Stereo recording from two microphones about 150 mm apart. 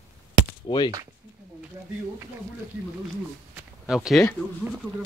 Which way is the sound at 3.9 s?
Centre (ahead or behind).